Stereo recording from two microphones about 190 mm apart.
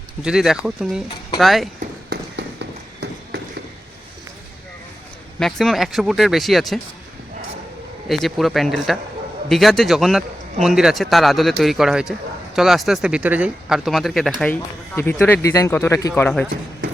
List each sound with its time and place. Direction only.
0.2 s speech: 5° right (ahead or behind)
1.8 s a sound: 60° right (ahead or behind)
5.4 s speech: centre (ahead or behind)
8.0 s speech: centre (ahead or behind)